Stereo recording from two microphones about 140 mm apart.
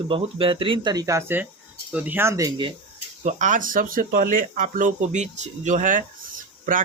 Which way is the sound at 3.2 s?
65° right (ahead or behind).